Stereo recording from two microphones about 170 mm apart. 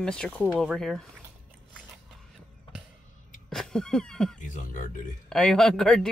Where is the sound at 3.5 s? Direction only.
5° left (ahead or behind).